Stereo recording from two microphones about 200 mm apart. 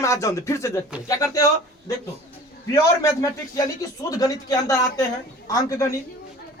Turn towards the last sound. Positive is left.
turn(degrees=15)  # may be behind; listen again after turning